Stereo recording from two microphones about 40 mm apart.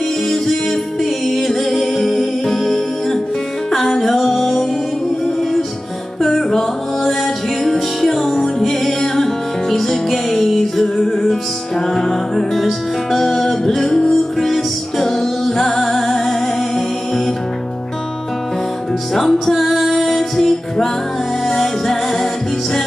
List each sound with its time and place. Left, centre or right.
1.2 s music: centre
6.2 s music: centre
13.8 s music: centre
19.5 s music: centre